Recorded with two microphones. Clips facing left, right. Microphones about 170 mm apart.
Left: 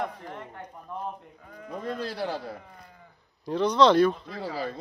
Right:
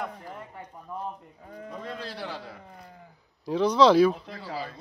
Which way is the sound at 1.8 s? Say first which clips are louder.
Left 6 dB; 45° left (ahead or behind).